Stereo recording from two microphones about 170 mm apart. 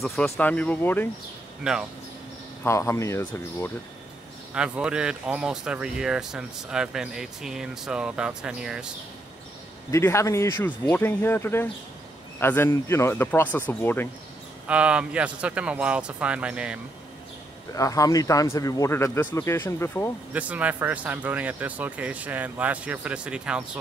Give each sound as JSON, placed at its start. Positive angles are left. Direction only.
{"t": 0.0, "sound": "speech", "side_deg": 0}
{"t": 1.6, "sound": "speech", "side_deg": -5}
{"t": 2.6, "sound": "speech", "side_deg": 15}
{"t": 4.6, "sound": "speech", "side_deg": -5}
{"t": 9.8, "sound": "speech", "side_deg": 15}
{"t": 14.7, "sound": "speech", "side_deg": -5}
{"t": 17.7, "sound": "speech", "side_deg": 20}
{"t": 20.3, "sound": "speech", "side_deg": -10}